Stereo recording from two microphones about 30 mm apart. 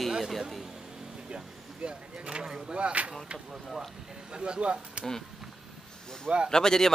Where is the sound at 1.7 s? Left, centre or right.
Right.